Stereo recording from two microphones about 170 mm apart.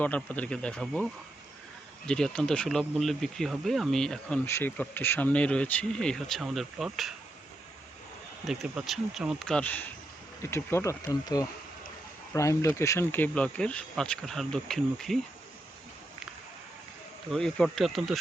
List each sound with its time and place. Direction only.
0.0 s speech: 10° left (ahead or behind)
2.0 s speech: 5° left (ahead or behind)
4.4 s speech: 15° left (ahead or behind)
8.4 s speech: centre (ahead or behind)
17.3 s speech: 5° left (ahead or behind)